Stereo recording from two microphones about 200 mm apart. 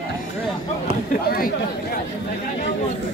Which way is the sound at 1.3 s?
50° left (ahead or behind).